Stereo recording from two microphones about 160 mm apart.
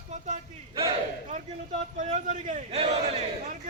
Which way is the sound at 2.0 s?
50° right (ahead or behind).